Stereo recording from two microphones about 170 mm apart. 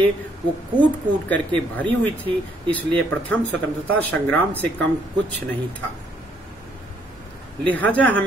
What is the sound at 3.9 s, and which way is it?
Speech, 10° left (ahead or behind).